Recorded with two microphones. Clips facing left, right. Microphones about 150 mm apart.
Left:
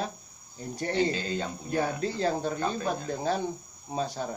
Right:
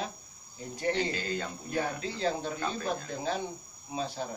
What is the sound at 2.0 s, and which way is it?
Cricket, 45° left (ahead or behind).